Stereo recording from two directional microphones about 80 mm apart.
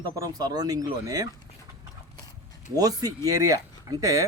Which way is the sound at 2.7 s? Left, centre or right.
Right.